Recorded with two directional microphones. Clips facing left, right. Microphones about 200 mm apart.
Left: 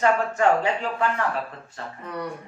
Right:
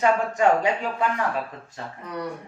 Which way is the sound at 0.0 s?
15° right (ahead or behind).